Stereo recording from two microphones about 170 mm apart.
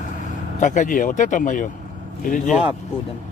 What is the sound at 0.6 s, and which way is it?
Speech, 50° left (ahead or behind).